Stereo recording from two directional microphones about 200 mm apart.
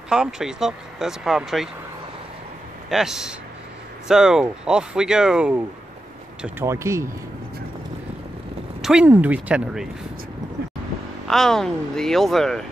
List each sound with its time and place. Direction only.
0.1 s speech: 5° right (ahead or behind)
2.9 s speech: centre (ahead or behind)
8.8 s speech: 5° right (ahead or behind)
11.2 s speech: centre (ahead or behind)